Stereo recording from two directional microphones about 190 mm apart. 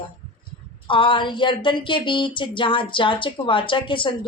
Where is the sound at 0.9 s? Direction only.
25° left (ahead or behind).